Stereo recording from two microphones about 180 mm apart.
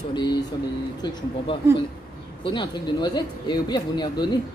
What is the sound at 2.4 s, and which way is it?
Speech, 25° left (ahead or behind).